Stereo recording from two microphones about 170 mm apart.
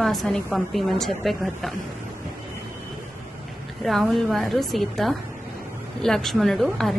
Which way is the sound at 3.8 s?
Centre (ahead or behind).